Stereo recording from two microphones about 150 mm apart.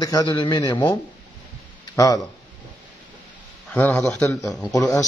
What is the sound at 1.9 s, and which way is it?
Speech, 20° left (ahead or behind).